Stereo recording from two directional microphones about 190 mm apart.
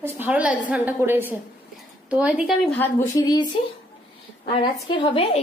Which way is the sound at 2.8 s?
15° left (ahead or behind).